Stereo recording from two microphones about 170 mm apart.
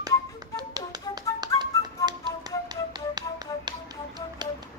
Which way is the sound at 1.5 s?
20° left (ahead or behind).